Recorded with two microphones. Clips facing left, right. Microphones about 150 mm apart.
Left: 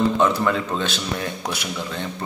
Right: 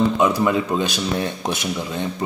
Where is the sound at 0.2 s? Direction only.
10° right (ahead or behind).